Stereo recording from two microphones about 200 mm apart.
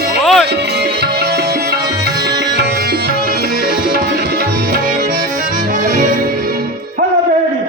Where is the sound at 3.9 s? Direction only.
50° right (ahead or behind).